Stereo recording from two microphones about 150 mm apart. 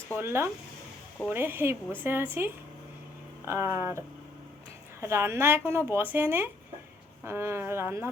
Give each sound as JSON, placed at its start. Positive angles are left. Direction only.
{"t": 0.2, "sound": "speech", "side_deg": -15}